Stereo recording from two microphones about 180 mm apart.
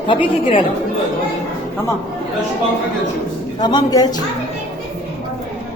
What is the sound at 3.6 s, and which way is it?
Speech, 20° left (ahead or behind).